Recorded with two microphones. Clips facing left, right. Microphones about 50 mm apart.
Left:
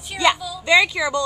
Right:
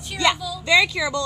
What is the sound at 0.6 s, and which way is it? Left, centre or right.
Speech, left.